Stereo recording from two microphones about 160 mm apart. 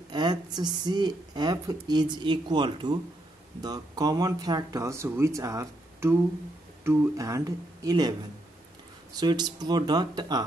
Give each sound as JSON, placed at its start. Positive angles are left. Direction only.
{"t": 0.1, "sound": "a woman's voice", "side_deg": -25}